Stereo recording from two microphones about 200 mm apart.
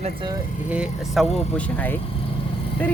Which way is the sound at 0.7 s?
5° right (ahead or behind).